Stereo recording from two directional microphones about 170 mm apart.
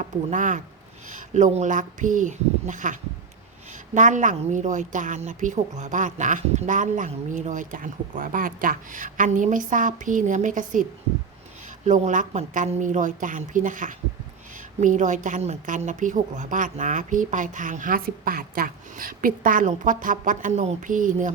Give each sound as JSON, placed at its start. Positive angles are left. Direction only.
{"t": 0.0, "sound": "a woman's voice", "side_deg": -45}
{"t": 11.9, "sound": "a woman's voice", "side_deg": -45}